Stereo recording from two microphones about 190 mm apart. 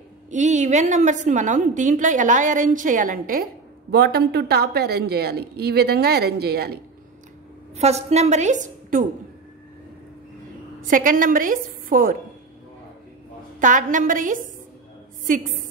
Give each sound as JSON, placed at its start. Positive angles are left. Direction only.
{"t": 0.3, "sound": "a woman's voice", "side_deg": -40}
{"t": 3.9, "sound": "a woman's voice", "side_deg": -60}
{"t": 7.7, "sound": "a woman's voice", "side_deg": -35}
{"t": 10.8, "sound": "a woman's voice", "side_deg": -45}
{"t": 13.6, "sound": "a woman's voice", "side_deg": -45}